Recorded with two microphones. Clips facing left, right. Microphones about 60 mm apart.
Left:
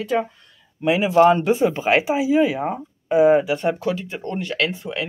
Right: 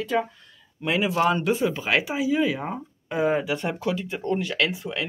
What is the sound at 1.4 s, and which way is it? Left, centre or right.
Speech, left.